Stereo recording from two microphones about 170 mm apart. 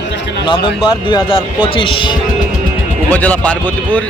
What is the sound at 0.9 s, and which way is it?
Speech, 25° left (ahead or behind).